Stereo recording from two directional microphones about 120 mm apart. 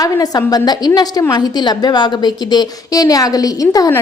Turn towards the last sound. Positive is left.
turn(degrees=30)  # may be behind; listen again after turning